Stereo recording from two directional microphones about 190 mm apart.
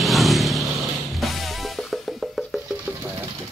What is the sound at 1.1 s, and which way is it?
Music, centre (ahead or behind).